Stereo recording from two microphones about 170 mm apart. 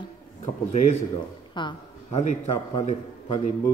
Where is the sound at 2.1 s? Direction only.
40° left (ahead or behind).